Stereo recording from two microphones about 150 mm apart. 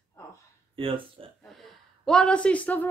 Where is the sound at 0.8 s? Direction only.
35° right (ahead or behind).